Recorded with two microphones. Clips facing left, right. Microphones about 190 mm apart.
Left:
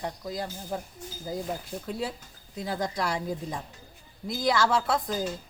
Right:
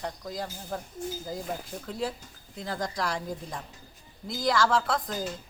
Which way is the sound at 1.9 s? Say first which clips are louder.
Right 1 dB; 10° left (ahead or behind).